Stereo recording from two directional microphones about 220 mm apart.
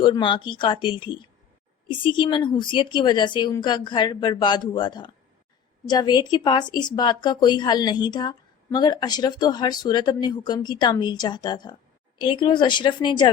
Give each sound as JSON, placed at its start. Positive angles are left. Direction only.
{"t": 0.0, "sound": "speech", "side_deg": 20}